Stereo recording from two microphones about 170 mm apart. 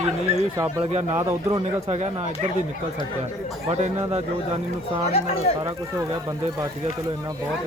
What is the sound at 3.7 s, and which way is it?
Speech, 40° right (ahead or behind).